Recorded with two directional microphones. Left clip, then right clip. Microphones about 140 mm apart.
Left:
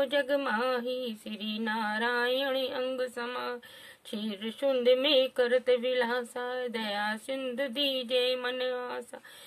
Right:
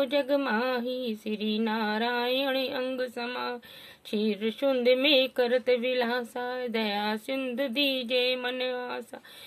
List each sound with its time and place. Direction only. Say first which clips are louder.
0.0 s speech: right 2 dB; 20° right (ahead or behind)